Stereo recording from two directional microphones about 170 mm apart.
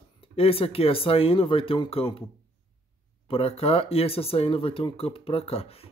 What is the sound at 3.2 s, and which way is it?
Speech, 35° left (ahead or behind).